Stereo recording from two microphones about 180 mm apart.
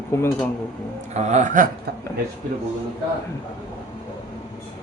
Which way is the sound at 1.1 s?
40° right (ahead or behind).